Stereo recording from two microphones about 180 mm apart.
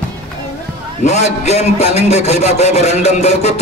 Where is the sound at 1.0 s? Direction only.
40° left (ahead or behind).